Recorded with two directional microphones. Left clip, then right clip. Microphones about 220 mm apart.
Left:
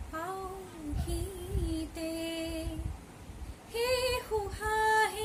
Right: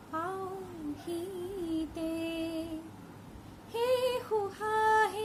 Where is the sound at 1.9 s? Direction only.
15° left (ahead or behind).